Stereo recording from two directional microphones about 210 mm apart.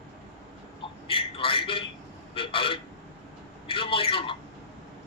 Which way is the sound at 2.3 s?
25° left (ahead or behind).